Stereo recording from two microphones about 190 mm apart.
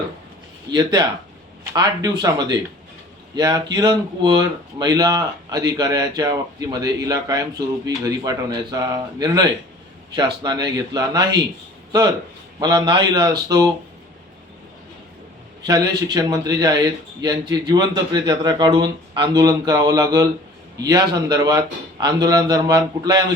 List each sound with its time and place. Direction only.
0.7 s speech: 20° right (ahead or behind)
3.3 s speech: 20° right (ahead or behind)
15.6 s speech: 20° right (ahead or behind)